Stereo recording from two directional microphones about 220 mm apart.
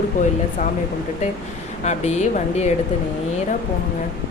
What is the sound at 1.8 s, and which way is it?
Speech, 30° left (ahead or behind).